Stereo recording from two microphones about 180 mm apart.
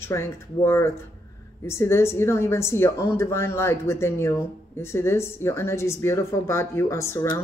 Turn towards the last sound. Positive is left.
turn(degrees=15)  # may be behind; listen again after turning